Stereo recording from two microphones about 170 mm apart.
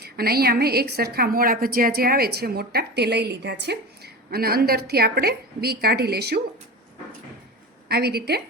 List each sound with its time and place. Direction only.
0.0 s a woman's voice: 65° right (ahead or behind)
7.9 s a woman's voice: 70° right (ahead or behind)